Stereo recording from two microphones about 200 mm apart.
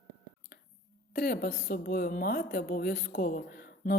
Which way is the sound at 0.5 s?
45° left (ahead or behind).